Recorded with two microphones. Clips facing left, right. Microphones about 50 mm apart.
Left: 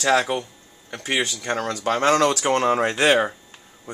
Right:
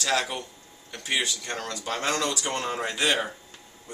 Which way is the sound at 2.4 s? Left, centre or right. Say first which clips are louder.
Left 10 dB; left.